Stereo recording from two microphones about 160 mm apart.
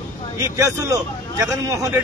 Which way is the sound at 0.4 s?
20° right (ahead or behind).